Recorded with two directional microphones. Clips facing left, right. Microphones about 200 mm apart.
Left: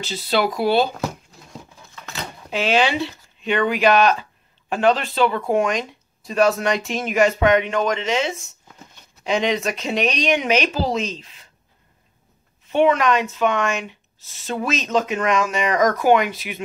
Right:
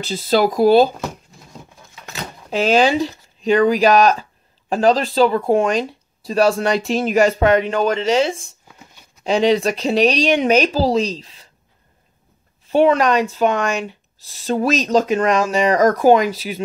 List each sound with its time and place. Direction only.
0.1 s speech: 45° right (ahead or behind)
2.5 s speech: 40° right (ahead or behind)
12.6 s speech: 35° right (ahead or behind)